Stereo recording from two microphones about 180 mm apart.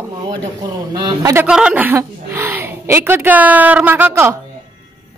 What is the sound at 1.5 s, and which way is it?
A woman's voice, 5° right (ahead or behind).